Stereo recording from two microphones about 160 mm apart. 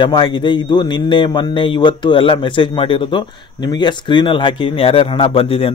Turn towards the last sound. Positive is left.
turn(degrees=35)  # may be behind; listen again after turning